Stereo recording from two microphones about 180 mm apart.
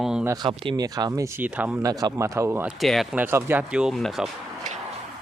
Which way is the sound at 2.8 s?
Centre (ahead or behind).